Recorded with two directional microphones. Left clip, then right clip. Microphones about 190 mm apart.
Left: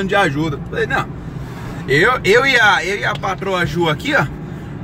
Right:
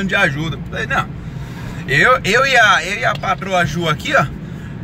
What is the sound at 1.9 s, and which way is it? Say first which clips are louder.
Speech: even; 20° left (ahead or behind).